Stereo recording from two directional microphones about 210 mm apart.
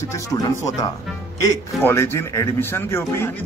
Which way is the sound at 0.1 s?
15° left (ahead or behind).